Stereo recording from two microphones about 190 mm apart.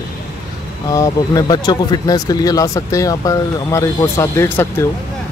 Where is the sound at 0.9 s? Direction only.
15° left (ahead or behind).